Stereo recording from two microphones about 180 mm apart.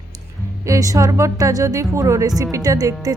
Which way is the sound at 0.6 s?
20° right (ahead or behind).